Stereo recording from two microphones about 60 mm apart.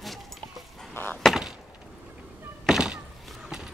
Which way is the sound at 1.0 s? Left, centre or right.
Left.